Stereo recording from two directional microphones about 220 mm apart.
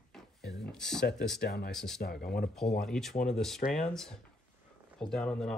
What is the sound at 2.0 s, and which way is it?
Speech, 45° left (ahead or behind).